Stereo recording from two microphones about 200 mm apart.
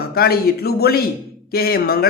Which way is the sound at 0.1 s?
50° left (ahead or behind).